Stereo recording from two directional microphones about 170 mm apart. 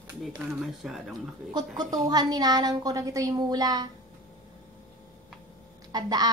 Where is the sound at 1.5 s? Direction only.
25° right (ahead or behind).